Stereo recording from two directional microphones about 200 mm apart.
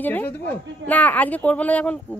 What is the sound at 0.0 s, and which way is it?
Speech, 10° left (ahead or behind).